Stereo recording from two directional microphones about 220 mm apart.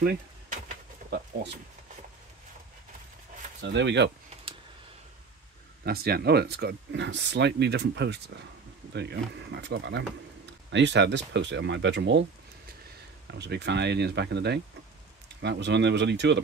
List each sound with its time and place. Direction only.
0.0 s a sound: 45° right (ahead or behind)
3.6 s speech: 55° right (ahead or behind)
5.9 s speech: 45° right (ahead or behind)
13.3 s speech: 50° right (ahead or behind)